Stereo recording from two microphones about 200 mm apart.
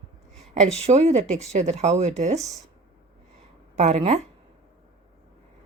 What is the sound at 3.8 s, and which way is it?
Speech, 35° right (ahead or behind).